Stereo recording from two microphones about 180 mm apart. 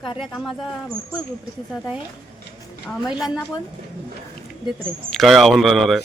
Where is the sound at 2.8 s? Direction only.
5° right (ahead or behind).